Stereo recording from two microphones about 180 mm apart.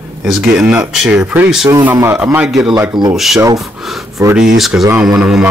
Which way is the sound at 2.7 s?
20° right (ahead or behind).